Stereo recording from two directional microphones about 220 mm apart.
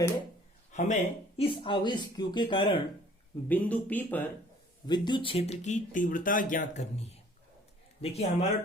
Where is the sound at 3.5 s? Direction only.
5° left (ahead or behind).